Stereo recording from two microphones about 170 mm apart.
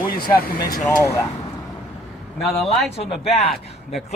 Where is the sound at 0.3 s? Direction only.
60° left (ahead or behind).